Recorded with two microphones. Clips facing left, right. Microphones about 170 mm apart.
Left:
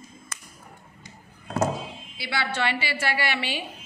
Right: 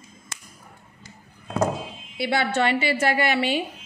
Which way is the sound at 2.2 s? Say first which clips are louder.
Right 6 dB; 50° right (ahead or behind).